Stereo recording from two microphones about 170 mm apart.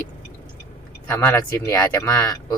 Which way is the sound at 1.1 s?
10° left (ahead or behind).